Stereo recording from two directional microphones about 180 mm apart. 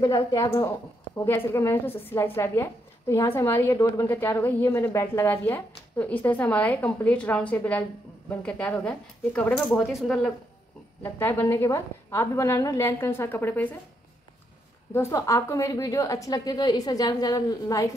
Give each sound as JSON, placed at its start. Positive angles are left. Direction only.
{"t": 0.0, "sound": "a woman's voice", "side_deg": 20}
{"t": 11.0, "sound": "a woman's voice", "side_deg": 10}
{"t": 15.0, "sound": "a woman's voice", "side_deg": 15}